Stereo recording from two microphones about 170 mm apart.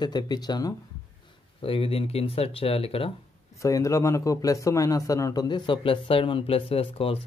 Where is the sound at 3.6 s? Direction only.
20° left (ahead or behind); by 7.2 s 35° left (ahead or behind).